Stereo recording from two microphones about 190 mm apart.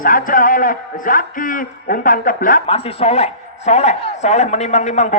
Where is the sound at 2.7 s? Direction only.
30° left (ahead or behind).